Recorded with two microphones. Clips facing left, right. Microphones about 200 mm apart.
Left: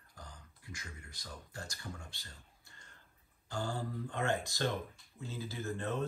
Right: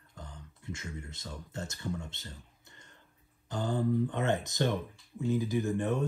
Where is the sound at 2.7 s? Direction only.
20° right (ahead or behind).